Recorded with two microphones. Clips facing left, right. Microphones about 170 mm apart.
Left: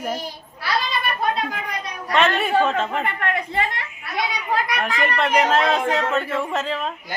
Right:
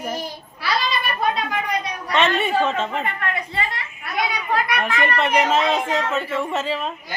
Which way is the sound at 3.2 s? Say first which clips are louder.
Left 3 dB; 55° left (ahead or behind).